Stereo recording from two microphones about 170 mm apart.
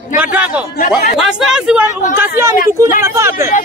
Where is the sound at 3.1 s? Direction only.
15° right (ahead or behind).